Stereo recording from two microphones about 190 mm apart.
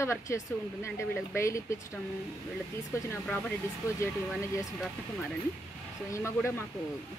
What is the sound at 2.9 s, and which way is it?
Speech, 15° left (ahead or behind).